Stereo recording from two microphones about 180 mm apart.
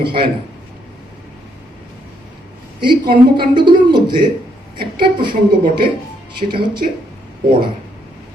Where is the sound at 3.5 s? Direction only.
25° right (ahead or behind).